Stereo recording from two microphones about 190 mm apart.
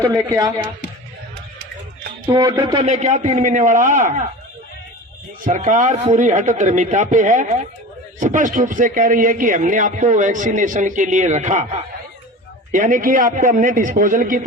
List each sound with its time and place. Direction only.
0.0 s speech: 20° right (ahead or behind)
2.2 s speech: 25° right (ahead or behind)
2.8 s a man's voice: 35° right (ahead or behind)
5.5 s a man's voice: 40° right (ahead or behind)